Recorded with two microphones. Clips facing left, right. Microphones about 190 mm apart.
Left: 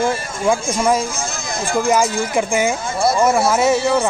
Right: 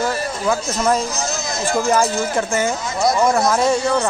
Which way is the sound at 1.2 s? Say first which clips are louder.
Right 2 dB; 55° left (ahead or behind).